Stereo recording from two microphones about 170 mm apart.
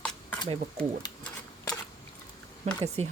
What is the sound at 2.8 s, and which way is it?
Speech, 40° right (ahead or behind).